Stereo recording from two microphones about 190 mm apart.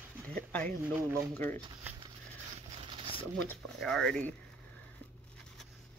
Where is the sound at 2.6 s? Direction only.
30° right (ahead or behind).